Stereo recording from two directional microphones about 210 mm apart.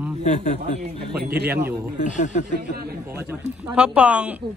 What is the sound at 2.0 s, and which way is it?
Speech, 35° left (ahead or behind).